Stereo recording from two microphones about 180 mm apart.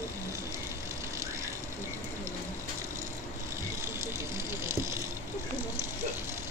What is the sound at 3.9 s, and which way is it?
Vehicle, 15° right (ahead or behind).